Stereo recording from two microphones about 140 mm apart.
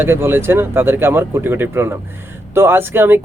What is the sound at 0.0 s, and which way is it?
A man's voice, 15° right (ahead or behind).